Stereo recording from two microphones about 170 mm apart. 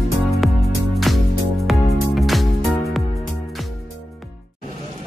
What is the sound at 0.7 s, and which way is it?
Music, centre (ahead or behind).